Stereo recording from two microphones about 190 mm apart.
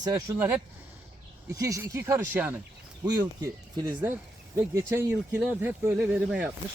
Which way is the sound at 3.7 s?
20° right (ahead or behind).